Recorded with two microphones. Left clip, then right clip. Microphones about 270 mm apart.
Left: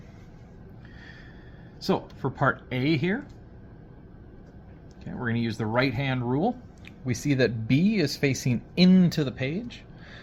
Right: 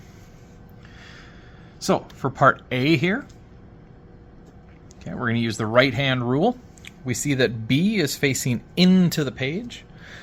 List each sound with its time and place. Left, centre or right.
1.8 s speech: right
5.0 s speech: right
6.8 s speech: centre